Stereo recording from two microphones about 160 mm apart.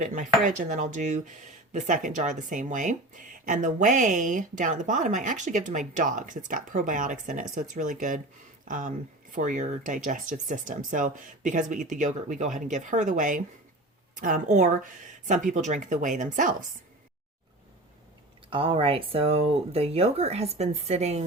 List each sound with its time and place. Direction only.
0.0 s speech: 50° right (ahead or behind)
18.5 s speech: 35° right (ahead or behind)